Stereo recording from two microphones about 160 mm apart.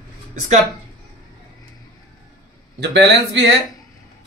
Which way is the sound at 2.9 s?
90° right.